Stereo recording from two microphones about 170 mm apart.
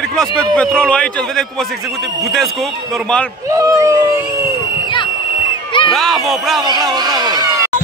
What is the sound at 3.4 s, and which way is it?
Speech, 20° right (ahead or behind).